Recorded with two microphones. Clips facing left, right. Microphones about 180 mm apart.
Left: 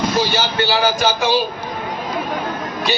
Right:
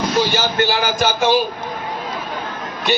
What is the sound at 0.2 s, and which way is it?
A man's voice, 50° right (ahead or behind).